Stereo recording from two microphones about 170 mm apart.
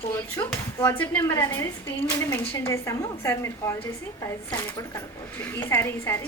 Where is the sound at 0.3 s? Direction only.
10° left (ahead or behind).